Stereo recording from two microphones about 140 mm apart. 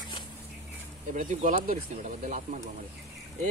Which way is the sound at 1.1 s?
70° right (ahead or behind).